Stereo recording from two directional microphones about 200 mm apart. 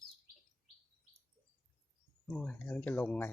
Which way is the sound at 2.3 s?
5° left (ahead or behind).